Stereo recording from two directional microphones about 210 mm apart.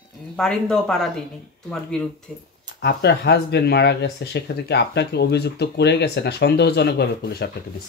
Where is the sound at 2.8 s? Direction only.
50° left (ahead or behind).